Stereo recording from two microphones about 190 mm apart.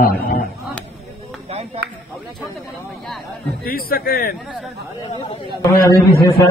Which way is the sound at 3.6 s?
50° left (ahead or behind).